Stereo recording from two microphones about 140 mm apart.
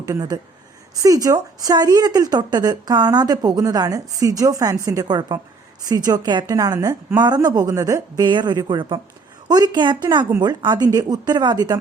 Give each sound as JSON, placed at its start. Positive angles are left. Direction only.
{"t": 0.1, "sound": "a woman's voice", "side_deg": -25}
{"t": 6.7, "sound": "a woman's voice", "side_deg": -15}
{"t": 7.2, "sound": "a woman's voice", "side_deg": -30}